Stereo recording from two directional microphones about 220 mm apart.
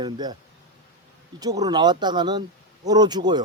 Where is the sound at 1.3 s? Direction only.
15° right (ahead or behind).